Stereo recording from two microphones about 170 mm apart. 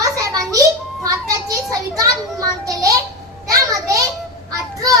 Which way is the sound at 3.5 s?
20° right (ahead or behind).